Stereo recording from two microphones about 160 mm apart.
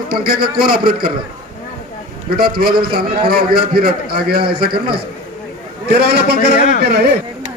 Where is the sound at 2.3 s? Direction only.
70° right (ahead or behind).